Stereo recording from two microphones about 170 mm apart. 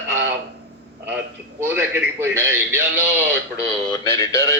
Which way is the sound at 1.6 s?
10° right (ahead or behind).